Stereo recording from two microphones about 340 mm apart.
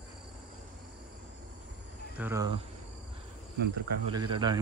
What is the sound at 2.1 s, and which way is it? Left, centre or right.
Speech, centre.